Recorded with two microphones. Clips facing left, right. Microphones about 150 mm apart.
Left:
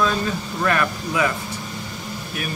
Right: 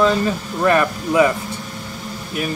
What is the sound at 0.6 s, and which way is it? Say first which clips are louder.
Speech: right 6 dB; 25° right (ahead or behind).